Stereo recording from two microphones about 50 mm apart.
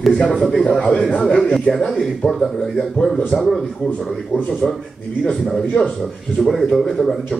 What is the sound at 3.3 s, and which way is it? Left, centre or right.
Speech, centre.